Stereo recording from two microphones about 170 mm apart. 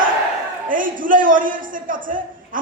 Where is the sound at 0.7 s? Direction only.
50° right (ahead or behind).